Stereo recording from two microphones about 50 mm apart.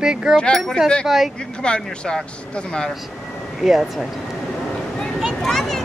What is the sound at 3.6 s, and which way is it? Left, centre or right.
Speech, centre.